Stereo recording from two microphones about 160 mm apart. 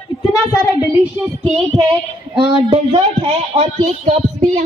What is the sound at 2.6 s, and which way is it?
Speech, 35° right (ahead or behind).